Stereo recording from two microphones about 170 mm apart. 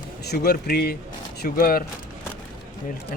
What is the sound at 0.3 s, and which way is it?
Speech, 70° left (ahead or behind).